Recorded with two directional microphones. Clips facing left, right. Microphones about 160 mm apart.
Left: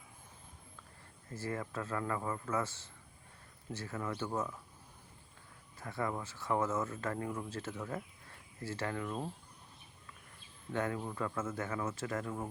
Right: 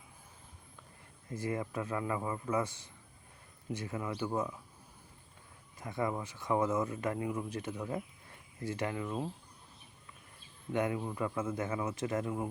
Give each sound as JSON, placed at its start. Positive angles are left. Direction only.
{"t": 1.3, "sound": "speech", "side_deg": -15}
{"t": 5.8, "sound": "speech", "side_deg": -15}
{"t": 10.7, "sound": "speech", "side_deg": -15}